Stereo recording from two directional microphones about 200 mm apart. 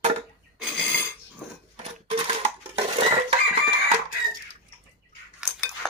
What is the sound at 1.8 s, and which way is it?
Sewing machine, 30° right (ahead or behind).